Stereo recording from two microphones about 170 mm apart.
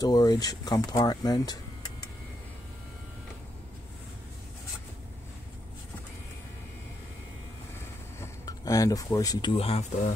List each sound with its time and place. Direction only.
0.0 s speech: 20° left (ahead or behind)
8.2 s speech: 20° left (ahead or behind); by 10.1 s 40° left (ahead or behind)